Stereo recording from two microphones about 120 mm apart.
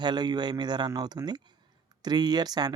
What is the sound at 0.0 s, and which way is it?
Speech, 35° right (ahead or behind).